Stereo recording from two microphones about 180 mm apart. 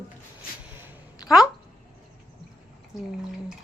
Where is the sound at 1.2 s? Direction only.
Centre (ahead or behind).